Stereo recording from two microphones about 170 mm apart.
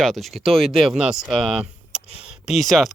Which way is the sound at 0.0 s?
Centre (ahead or behind).